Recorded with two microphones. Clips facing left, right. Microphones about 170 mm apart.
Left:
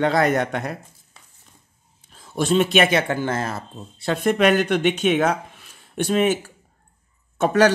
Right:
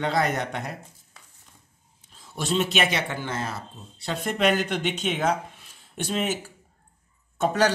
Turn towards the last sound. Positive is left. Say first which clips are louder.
# left 6 dB
turn(degrees=65)  # may be behind; listen again after turning